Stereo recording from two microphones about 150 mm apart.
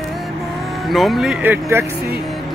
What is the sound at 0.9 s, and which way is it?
Speech, centre (ahead or behind).